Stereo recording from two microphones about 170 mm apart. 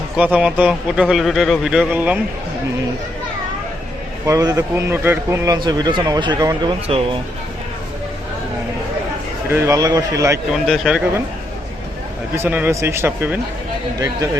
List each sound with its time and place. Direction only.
0.2 s a man's voice: 5° right (ahead or behind)
4.3 s speech: 20° right (ahead or behind)
5.5 s speech: 25° right (ahead or behind)
9.5 s speech: 15° right (ahead or behind)
10.5 s a man's voice: centre (ahead or behind)
12.4 s speech: 10° right (ahead or behind)